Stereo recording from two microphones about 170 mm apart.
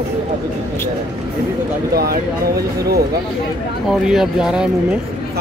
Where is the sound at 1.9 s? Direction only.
65° right (ahead or behind).